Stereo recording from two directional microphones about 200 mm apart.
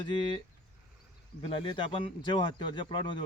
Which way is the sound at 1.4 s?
25° left (ahead or behind).